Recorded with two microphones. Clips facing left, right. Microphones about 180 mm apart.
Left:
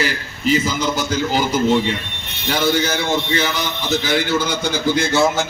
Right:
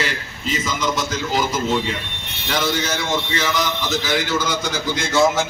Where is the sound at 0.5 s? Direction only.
30° left (ahead or behind).